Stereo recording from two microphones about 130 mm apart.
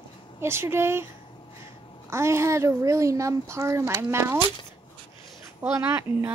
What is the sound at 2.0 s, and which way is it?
Speech, 20° right (ahead or behind).